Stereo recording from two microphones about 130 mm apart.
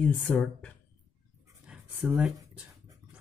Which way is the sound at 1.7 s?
10° right (ahead or behind).